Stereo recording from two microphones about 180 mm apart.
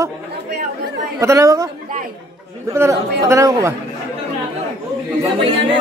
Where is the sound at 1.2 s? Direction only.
15° right (ahead or behind).